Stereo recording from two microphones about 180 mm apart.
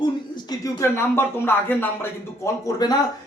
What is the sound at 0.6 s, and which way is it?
Speech, 15° left (ahead or behind).